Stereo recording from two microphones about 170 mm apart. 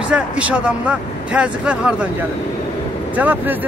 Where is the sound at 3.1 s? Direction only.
10° right (ahead or behind).